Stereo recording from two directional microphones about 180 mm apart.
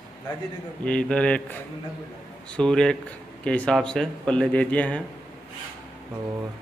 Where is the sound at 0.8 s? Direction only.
5° left (ahead or behind).